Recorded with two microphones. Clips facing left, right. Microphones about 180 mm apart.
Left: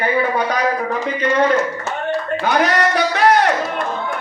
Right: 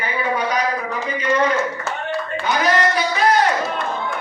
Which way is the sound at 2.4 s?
65° left (ahead or behind).